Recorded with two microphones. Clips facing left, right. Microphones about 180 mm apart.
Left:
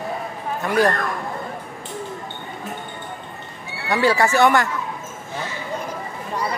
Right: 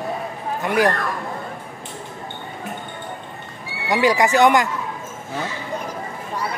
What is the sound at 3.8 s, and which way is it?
Speech, 15° right (ahead or behind).